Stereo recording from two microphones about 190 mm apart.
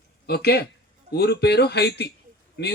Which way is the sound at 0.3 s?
55° left (ahead or behind).